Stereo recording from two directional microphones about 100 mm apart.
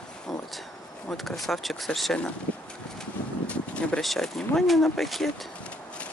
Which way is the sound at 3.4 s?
10° left (ahead or behind).